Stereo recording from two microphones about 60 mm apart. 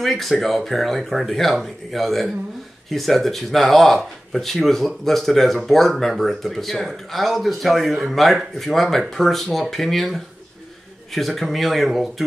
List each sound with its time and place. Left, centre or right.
0.0 s speech: centre